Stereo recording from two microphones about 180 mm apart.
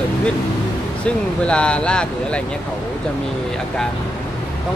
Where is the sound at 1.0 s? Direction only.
5° left (ahead or behind).